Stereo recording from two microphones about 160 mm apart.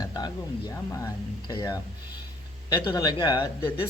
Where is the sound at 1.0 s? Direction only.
25° left (ahead or behind).